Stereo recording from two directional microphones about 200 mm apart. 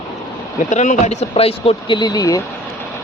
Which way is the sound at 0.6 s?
35° left (ahead or behind).